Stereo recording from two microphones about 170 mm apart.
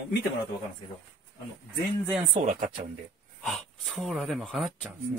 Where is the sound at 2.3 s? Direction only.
35° right (ahead or behind).